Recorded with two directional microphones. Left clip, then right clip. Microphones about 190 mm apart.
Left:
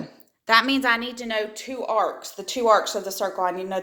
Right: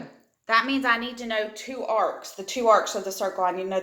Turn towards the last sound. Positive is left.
turn(degrees=45)  # may be behind; listen again after turning